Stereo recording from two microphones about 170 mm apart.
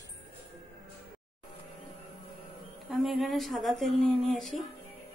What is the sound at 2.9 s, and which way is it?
Speech, centre (ahead or behind).